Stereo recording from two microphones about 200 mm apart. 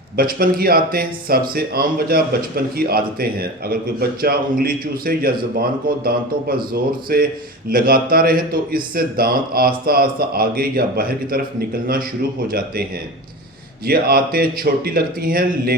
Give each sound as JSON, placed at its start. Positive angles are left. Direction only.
{"t": 0.2, "sound": "speech", "side_deg": -45}
{"t": 13.8, "sound": "speech", "side_deg": -50}